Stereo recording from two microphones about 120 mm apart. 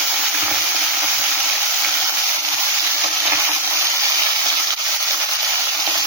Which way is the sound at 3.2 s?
15° right (ahead or behind).